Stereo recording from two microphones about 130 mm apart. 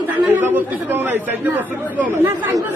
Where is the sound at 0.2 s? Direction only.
15° right (ahead or behind).